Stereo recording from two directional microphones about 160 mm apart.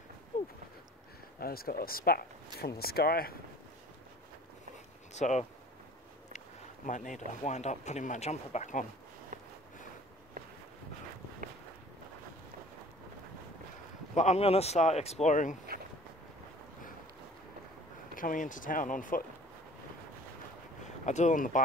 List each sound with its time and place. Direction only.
1.4 s speech: 70° left (ahead or behind)
5.1 s speech: 45° left (ahead or behind)
6.9 s speech: 55° left (ahead or behind)
14.1 s speech: 45° left (ahead or behind)
18.1 s speech: 55° left (ahead or behind)
20.8 s speech: 50° left (ahead or behind)